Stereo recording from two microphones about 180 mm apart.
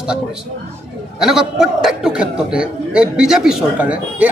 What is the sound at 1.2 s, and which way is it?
A man's voice, 5° right (ahead or behind).